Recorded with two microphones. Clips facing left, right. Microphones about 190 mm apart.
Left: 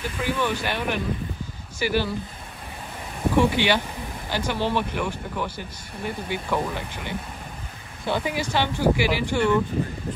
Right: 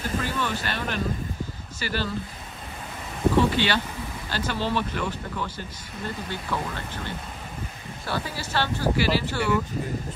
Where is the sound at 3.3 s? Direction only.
15° left (ahead or behind).